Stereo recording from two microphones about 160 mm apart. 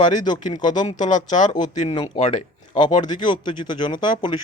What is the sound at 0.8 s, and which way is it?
Speech, 50° left (ahead or behind).